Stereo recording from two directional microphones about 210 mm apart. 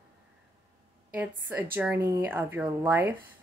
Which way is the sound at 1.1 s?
5° right (ahead or behind).